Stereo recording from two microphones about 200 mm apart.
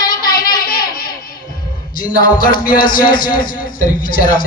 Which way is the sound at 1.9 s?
45° left (ahead or behind).